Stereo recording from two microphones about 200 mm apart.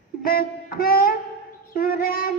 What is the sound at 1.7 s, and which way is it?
Child singing, 45° left (ahead or behind).